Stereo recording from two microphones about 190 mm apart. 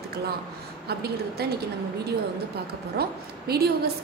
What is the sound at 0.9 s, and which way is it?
Speech, 55° right (ahead or behind).